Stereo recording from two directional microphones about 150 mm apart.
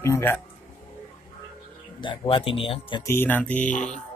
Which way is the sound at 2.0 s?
35° left (ahead or behind).